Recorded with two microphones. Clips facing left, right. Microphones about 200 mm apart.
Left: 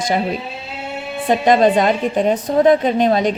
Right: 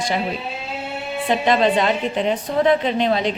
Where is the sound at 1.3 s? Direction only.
45° left (ahead or behind).